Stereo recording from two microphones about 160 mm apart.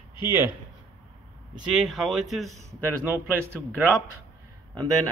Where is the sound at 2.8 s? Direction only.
10° right (ahead or behind).